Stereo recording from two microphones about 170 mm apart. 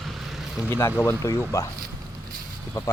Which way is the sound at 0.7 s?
15° left (ahead or behind).